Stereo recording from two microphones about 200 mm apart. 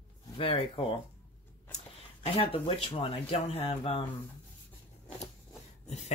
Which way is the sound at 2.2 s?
25° left (ahead or behind).